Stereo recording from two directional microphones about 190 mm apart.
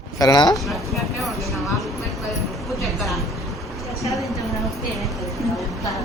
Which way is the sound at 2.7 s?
Centre (ahead or behind).